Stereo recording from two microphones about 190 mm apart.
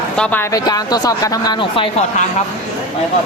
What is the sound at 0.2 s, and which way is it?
Speech, 10° left (ahead or behind).